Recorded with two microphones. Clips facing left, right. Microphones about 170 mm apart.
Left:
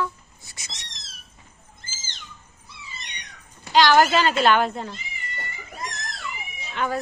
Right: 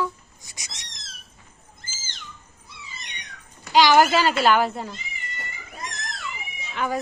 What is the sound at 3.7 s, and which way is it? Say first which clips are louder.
A woman's voice: even; 10° right (ahead or behind).